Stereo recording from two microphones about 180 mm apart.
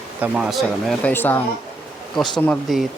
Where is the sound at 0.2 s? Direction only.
5° right (ahead or behind).